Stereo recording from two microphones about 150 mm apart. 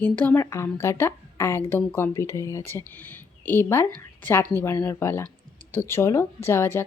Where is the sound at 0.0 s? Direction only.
10° left (ahead or behind).